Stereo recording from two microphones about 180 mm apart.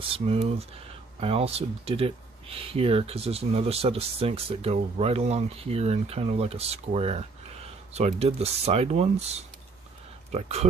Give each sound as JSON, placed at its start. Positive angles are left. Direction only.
{"t": 0.0, "sound": "speech", "side_deg": -30}